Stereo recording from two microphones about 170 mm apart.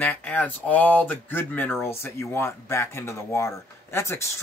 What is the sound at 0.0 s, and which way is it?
Speech, 10° left (ahead or behind).